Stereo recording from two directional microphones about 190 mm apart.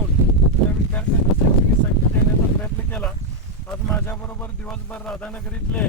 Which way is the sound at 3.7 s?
10° left (ahead or behind).